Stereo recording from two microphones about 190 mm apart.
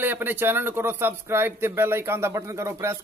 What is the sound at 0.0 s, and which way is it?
Speech, 10° right (ahead or behind).